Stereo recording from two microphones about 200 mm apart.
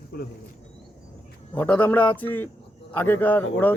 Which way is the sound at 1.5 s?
10° left (ahead or behind).